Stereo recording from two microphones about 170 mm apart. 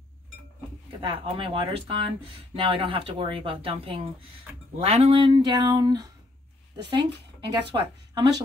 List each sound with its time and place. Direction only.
0.8 s speech: 30° right (ahead or behind)